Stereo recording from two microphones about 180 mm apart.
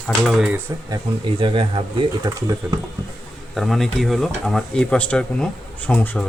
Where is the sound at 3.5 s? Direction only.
Centre (ahead or behind).